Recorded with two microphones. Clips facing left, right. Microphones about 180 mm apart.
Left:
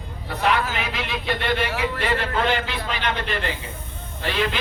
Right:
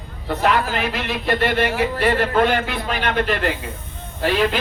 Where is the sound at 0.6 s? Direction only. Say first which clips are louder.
Right 4 dB; 50° right (ahead or behind).